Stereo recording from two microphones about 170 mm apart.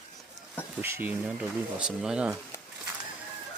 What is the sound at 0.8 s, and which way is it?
Speech, 10° right (ahead or behind).